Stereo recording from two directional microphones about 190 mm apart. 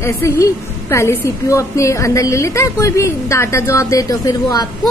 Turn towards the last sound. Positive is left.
turn(degrees=20)  # may be behind; listen again after turning